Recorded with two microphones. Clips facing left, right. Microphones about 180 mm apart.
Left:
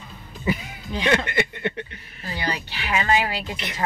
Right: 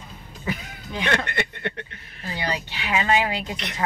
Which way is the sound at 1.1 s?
5° left (ahead or behind).